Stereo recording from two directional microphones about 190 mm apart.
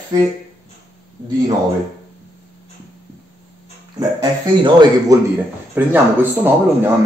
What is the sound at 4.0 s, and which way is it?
Speech, 20° right (ahead or behind).